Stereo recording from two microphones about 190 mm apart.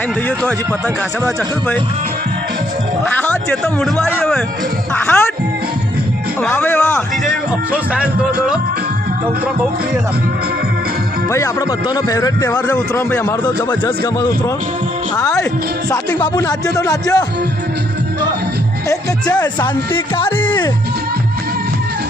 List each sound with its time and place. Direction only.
3.1 s a man's voice: 5° left (ahead or behind)
6.4 s a man's voice: 10° left (ahead or behind)
7.9 s a man's voice: 5° right (ahead or behind)
11.3 s a man's voice: 15° left (ahead or behind)
15.1 s a man's voice: 20° left (ahead or behind)
18.9 s speech: 20° left (ahead or behind)